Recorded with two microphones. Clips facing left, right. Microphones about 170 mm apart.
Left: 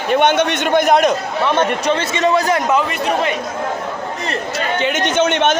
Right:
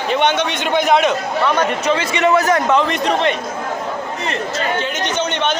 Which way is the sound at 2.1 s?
35° left (ahead or behind).